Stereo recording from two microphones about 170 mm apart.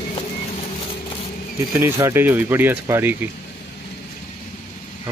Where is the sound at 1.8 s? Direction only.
15° right (ahead or behind).